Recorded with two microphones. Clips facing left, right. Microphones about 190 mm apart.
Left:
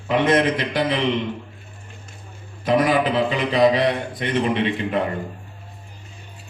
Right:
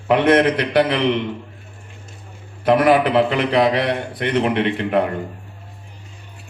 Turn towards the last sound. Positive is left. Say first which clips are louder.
# right 3 dB
turn(degrees=-65)  # may be behind; listen again after turning